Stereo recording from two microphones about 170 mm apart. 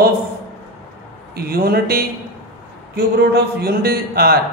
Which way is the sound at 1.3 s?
60° right (ahead or behind).